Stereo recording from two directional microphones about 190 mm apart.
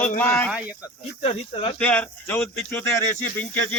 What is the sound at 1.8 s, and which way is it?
Speech, 5° left (ahead or behind).